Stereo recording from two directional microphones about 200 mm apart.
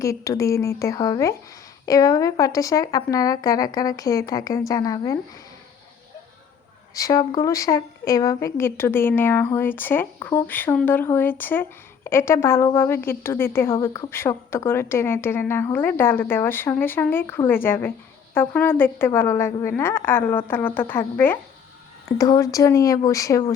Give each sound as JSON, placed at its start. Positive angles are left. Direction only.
{"t": 0.0, "sound": "a woman's voice", "side_deg": 15}
{"t": 6.9, "sound": "a woman's voice", "side_deg": 15}